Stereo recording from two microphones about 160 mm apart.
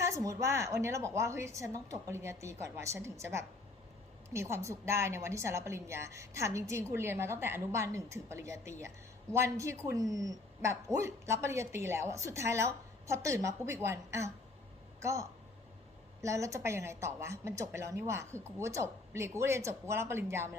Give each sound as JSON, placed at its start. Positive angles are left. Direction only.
{"t": 0.0, "sound": "speech", "side_deg": -20}